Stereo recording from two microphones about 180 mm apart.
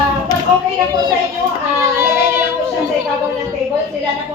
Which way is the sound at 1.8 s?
15° right (ahead or behind).